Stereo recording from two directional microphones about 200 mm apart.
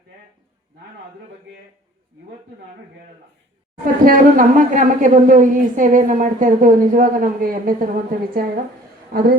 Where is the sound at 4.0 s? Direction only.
45° right (ahead or behind).